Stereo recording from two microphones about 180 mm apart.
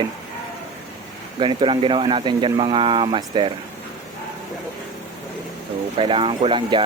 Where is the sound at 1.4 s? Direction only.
25° right (ahead or behind).